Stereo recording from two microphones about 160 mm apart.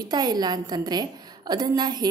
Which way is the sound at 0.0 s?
25° right (ahead or behind).